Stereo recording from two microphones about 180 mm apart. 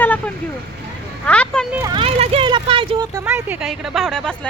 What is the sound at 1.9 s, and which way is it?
Speech, 30° right (ahead or behind).